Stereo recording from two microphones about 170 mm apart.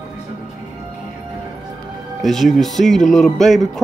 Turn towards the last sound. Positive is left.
turn(degrees=0)  # may be behind; listen again after turning